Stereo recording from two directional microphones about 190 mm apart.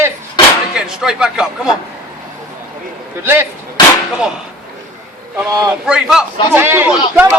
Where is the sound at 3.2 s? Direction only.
10° right (ahead or behind).